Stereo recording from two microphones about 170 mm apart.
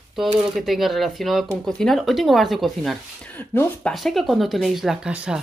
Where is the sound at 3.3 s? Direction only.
10° left (ahead or behind).